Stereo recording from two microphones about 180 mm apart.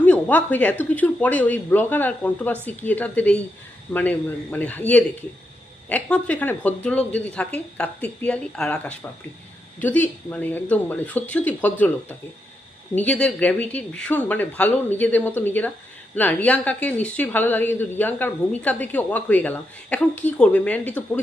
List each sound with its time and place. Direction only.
0.0 s speech: 10° left (ahead or behind)